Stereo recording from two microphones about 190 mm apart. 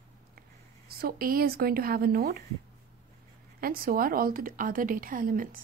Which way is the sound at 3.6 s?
50° right (ahead or behind).